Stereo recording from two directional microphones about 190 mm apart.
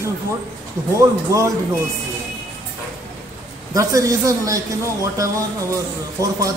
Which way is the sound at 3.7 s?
15° right (ahead or behind).